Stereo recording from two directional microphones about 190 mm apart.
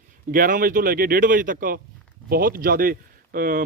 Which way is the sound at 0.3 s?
45° right (ahead or behind).